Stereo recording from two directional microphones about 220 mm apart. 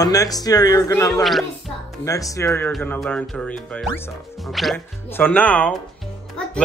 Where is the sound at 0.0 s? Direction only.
15° left (ahead or behind).